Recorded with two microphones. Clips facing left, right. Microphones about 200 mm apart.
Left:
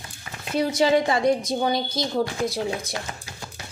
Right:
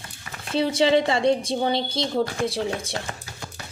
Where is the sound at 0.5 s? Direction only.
30° right (ahead or behind).